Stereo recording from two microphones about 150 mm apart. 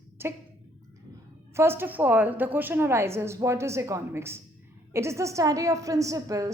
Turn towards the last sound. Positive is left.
turn(degrees=-20)  # may be behind; listen again after turning